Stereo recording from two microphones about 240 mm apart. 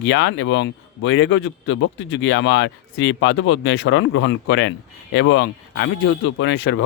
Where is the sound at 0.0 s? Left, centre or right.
Left.